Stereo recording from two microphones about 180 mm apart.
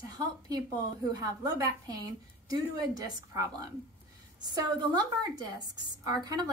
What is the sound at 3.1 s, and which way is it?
A woman's voice, 15° right (ahead or behind).